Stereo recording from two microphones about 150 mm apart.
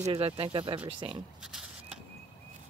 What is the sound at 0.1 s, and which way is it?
Speech, 40° right (ahead or behind).